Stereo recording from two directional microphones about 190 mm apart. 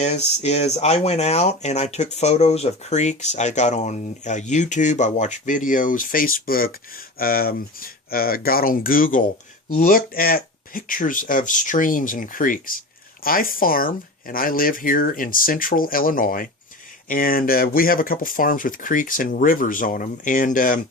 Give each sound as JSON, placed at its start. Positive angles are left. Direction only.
{"t": 0.0, "sound": "speech", "side_deg": 35}